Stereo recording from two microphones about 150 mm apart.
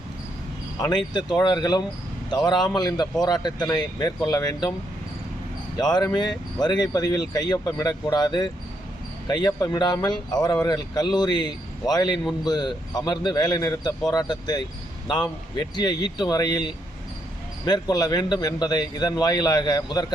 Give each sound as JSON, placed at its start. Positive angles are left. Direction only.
{"t": 0.8, "sound": "speech", "side_deg": 25}
{"t": 5.7, "sound": "speech", "side_deg": 25}